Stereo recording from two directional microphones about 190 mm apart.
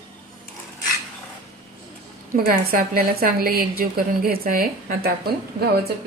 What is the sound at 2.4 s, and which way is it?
A woman's voice, 50° right (ahead or behind).